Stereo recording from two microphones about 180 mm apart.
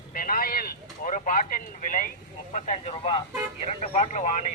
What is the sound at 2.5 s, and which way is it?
Speech, 35° left (ahead or behind).